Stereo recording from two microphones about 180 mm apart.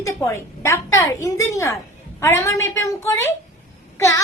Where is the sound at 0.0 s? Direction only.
15° left (ahead or behind).